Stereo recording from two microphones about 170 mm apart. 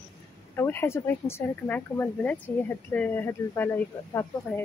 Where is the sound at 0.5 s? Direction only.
15° left (ahead or behind).